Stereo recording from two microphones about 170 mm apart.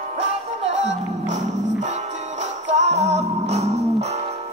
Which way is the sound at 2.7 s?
40° right (ahead or behind).